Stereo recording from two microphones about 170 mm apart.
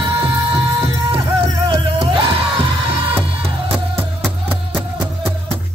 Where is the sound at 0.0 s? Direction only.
30° right (ahead or behind).